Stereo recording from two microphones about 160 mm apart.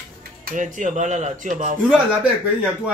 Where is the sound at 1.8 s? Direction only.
5° right (ahead or behind).